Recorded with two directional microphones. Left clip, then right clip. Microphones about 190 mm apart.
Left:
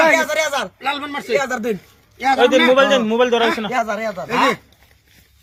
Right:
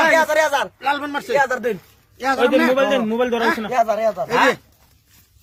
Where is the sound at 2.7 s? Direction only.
5° left (ahead or behind).